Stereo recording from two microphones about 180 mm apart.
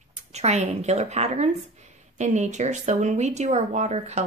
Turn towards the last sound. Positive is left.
turn(degrees=-40)  # may be behind; listen again after turning